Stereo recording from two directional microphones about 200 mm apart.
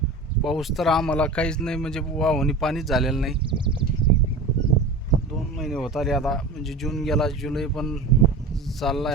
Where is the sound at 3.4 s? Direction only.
25° right (ahead or behind).